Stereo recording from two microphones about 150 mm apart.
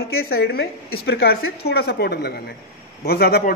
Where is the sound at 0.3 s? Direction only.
90° left.